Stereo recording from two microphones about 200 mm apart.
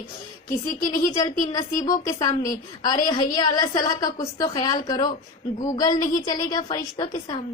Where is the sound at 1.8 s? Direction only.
20° left (ahead or behind).